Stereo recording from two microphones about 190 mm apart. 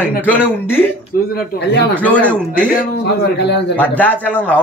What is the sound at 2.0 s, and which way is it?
Speech, 5° left (ahead or behind).